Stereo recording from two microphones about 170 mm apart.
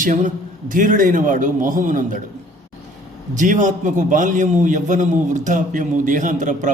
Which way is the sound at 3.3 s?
50° right (ahead or behind).